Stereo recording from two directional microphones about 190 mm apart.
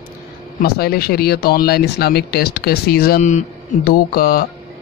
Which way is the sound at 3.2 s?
40° left (ahead or behind).